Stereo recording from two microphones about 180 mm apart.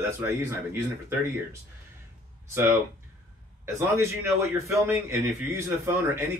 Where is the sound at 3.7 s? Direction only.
15° right (ahead or behind).